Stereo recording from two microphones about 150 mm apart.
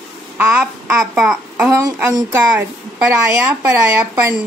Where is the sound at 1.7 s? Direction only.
20° right (ahead or behind).